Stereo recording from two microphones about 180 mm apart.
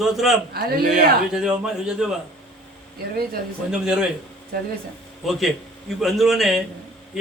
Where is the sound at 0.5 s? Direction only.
60° right (ahead or behind).